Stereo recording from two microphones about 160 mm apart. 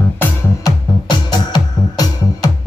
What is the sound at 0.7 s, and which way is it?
Music, 25° left (ahead or behind).